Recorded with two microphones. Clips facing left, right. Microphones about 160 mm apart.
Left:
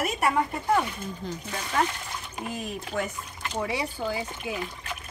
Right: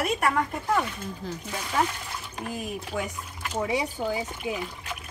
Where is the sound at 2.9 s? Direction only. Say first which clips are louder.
Left 1 dB; 5° right (ahead or behind).